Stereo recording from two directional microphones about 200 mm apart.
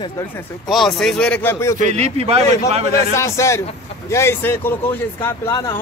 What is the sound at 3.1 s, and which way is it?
Speech, 15° left (ahead or behind).